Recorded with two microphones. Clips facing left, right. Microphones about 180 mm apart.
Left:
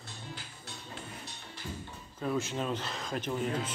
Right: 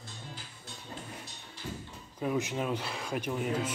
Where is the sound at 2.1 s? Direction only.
15° right (ahead or behind).